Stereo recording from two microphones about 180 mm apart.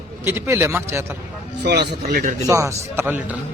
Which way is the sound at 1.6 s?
65° right (ahead or behind).